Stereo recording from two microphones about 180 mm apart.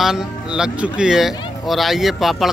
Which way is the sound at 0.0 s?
5° right (ahead or behind).